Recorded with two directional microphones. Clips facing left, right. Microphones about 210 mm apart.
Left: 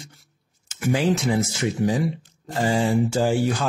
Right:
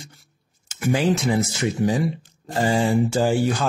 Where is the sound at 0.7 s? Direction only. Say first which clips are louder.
Right 1 dB; 35° right (ahead or behind).